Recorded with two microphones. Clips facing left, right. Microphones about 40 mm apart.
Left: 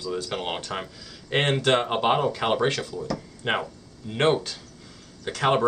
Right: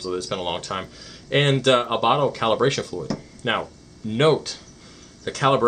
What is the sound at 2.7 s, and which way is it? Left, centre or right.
Speech, centre.